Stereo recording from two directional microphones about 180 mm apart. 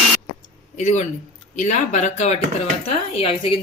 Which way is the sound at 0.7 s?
40° left (ahead or behind).